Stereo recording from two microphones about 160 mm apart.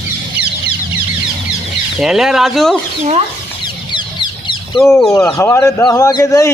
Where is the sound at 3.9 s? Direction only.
30° left (ahead or behind).